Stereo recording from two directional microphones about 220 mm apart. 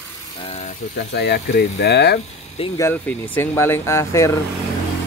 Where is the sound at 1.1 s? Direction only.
50° left (ahead or behind).